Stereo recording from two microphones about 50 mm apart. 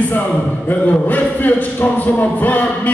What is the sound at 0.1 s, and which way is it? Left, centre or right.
A man's voice, left.